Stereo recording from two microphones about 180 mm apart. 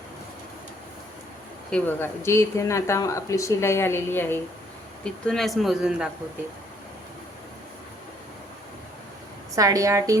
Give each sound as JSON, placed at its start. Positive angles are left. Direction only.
{"t": 1.7, "sound": "a man's voice", "side_deg": 10}
{"t": 9.6, "sound": "a woman's voice", "side_deg": -20}